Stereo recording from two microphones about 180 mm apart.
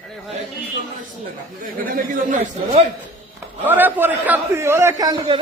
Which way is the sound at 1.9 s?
50° right (ahead or behind).